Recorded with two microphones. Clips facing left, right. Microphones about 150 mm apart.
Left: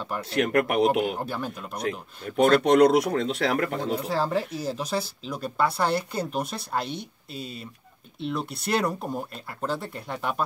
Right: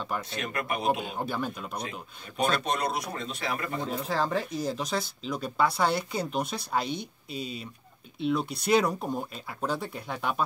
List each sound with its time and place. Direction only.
0.3 s speech: 70° left (ahead or behind)
1.2 s speech: centre (ahead or behind)
1.9 s speech: 65° left (ahead or behind)
3.9 s speech: 5° left (ahead or behind)